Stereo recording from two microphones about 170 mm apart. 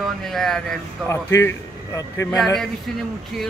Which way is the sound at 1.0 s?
15° left (ahead or behind).